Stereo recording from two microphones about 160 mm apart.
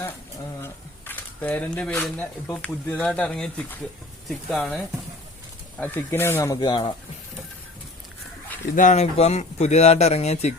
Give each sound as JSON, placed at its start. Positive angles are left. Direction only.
{"t": 0.6, "sound": "speech", "side_deg": 10}
{"t": 5.8, "sound": "speech", "side_deg": 15}
{"t": 8.7, "sound": "speech", "side_deg": 50}